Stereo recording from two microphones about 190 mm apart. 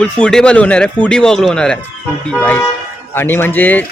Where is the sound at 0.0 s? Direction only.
5° left (ahead or behind).